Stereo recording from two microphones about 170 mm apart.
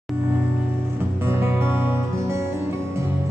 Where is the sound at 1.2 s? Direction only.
15° right (ahead or behind).